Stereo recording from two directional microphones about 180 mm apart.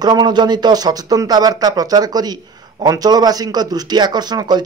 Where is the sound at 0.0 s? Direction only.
25° right (ahead or behind).